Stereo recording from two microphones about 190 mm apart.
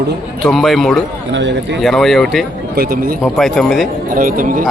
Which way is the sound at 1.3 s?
70° right (ahead or behind).